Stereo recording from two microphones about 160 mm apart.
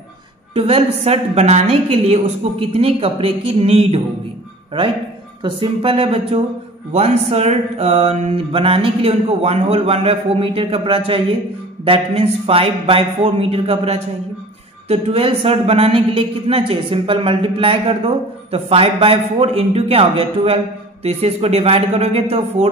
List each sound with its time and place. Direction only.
0.6 s speech: 40° right (ahead or behind)
5.4 s speech: 35° right (ahead or behind)